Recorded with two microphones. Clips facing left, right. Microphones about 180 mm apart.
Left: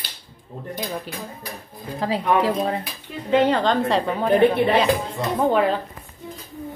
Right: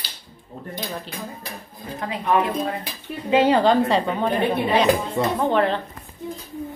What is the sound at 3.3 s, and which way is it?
A woman's voice, 10° right (ahead or behind).